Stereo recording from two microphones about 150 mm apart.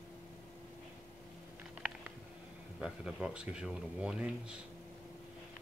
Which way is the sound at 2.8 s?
5° right (ahead or behind).